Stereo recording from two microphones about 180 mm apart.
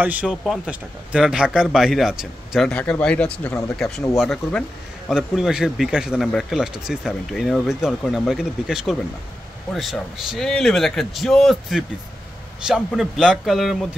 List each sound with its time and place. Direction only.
0.0 s speech: 10° right (ahead or behind)